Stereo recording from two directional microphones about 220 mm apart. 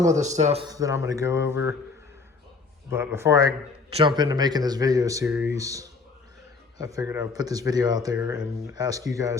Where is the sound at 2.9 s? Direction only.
10° right (ahead or behind).